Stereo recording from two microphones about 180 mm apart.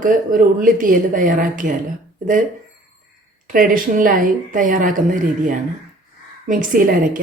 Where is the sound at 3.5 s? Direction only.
50° right (ahead or behind).